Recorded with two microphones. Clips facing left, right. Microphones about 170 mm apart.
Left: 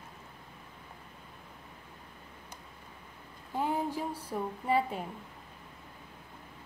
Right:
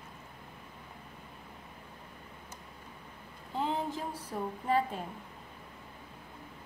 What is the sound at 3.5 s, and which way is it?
Speech, 10° left (ahead or behind).